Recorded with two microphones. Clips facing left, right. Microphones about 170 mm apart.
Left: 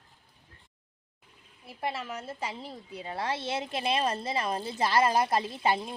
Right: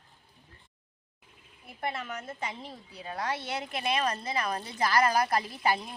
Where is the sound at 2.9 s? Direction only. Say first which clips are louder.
Left 1 dB; 25° left (ahead or behind).